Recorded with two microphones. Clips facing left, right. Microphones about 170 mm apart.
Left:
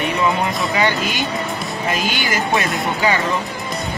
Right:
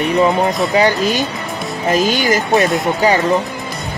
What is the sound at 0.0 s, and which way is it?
Speech, 40° right (ahead or behind).